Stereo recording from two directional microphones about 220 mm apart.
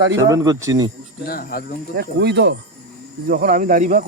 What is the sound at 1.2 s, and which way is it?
Speech, 45° left (ahead or behind).